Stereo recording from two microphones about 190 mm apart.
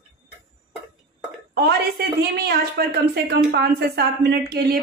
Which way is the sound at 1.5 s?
55° right (ahead or behind).